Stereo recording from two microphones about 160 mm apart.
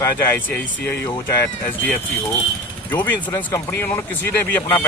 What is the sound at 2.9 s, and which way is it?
Speech, 10° left (ahead or behind).